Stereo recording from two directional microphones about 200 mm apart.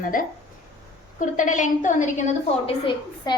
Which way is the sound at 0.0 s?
45° left (ahead or behind).